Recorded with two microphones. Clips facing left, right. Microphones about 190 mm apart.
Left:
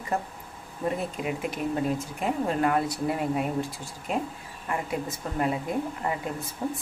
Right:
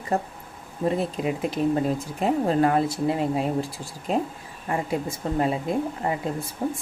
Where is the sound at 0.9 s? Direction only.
30° right (ahead or behind).